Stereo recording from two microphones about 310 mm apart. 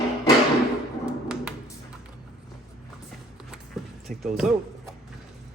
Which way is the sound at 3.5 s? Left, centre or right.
Centre.